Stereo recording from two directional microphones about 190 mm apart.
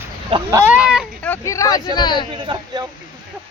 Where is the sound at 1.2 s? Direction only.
10° left (ahead or behind).